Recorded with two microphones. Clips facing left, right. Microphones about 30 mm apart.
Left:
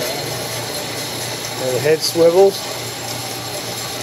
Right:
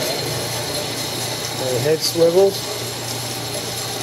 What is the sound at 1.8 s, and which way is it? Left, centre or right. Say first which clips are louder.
Speech: left 3 dB; centre.